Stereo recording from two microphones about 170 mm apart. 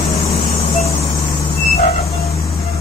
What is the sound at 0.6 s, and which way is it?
Vehicle, 35° left (ahead or behind).